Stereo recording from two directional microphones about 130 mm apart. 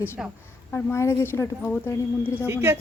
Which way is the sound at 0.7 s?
20° left (ahead or behind).